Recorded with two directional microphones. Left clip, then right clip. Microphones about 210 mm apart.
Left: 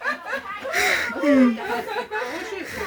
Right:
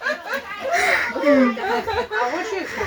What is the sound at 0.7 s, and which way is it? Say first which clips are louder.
Laughter: right 3 dB; 25° left (ahead or behind).